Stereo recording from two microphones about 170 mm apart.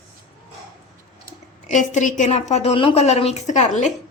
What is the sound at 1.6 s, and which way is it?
A woman's voice, 45° left (ahead or behind).